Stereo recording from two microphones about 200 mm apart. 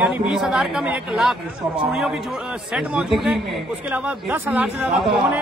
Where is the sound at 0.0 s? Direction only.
5° right (ahead or behind).